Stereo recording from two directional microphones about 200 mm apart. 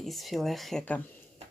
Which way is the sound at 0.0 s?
Centre (ahead or behind).